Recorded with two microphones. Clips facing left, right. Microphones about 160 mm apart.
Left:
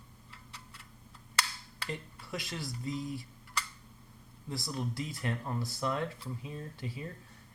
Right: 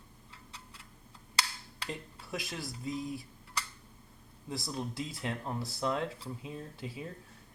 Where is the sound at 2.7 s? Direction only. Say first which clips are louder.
Even; 20° right (ahead or behind).